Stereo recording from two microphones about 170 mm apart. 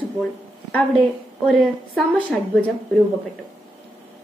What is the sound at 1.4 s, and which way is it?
A woman's voice, 5° left (ahead or behind).